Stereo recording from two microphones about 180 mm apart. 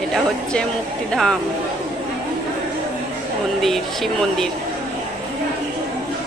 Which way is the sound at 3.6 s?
Centre (ahead or behind).